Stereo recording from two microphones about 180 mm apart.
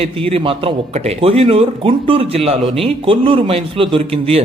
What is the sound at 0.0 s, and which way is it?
Speech, 30° right (ahead or behind).